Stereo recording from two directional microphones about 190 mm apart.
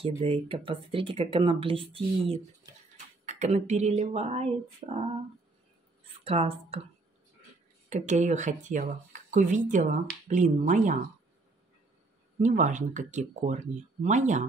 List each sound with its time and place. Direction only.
0.2 s speech: 30° right (ahead or behind)
2.6 s a sound: 20° right (ahead or behind)
3.3 s speech: 35° right (ahead or behind)
6.2 s speech: 30° right (ahead or behind)
7.9 s speech: 40° right (ahead or behind)
12.4 s speech: 40° right (ahead or behind)